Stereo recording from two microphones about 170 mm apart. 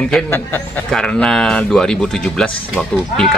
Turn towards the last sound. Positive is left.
turn(degrees=5)  # may be behind; listen again after turning